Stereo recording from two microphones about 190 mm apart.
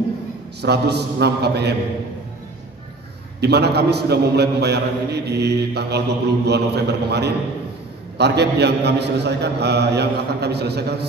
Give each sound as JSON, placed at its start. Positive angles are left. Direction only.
{"t": 0.6, "sound": "a man's voice", "side_deg": -60}
{"t": 3.3, "sound": "a man's voice", "side_deg": -60}